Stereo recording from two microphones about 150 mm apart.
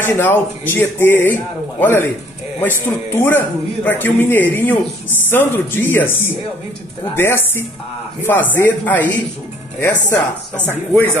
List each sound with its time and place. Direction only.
0.0 s a man's voice: 15° left (ahead or behind)